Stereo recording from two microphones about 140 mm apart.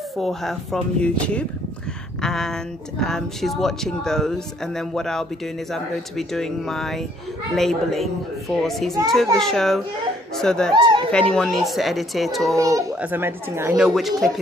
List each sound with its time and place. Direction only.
0.2 s a woman's voice: centre (ahead or behind)
10.7 s speech: 35° right (ahead or behind)
11.1 s a woman's voice: 5° left (ahead or behind)
12.5 s a child's voice: 25° right (ahead or behind)
13.7 s a woman's voice: centre (ahead or behind)